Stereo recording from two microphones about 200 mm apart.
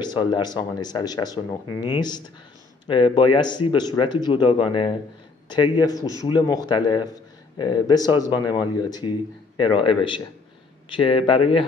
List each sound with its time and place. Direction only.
0.0 s speech: 20° left (ahead or behind)